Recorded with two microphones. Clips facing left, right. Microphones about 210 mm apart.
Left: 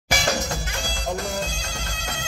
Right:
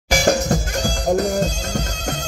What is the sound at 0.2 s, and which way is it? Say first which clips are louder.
Music: right 8 dB; 45° right (ahead or behind).